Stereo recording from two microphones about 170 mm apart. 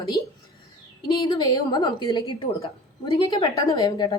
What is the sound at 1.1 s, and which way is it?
A woman's voice, 25° left (ahead or behind).